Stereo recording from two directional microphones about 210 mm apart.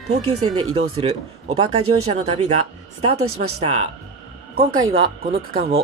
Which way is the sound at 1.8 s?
90° right.